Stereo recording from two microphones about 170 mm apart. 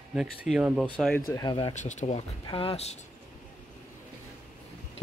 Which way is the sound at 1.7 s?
45° left (ahead or behind).